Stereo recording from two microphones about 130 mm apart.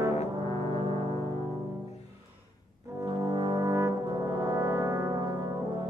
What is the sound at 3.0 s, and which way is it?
Brass instrument, 35° right (ahead or behind).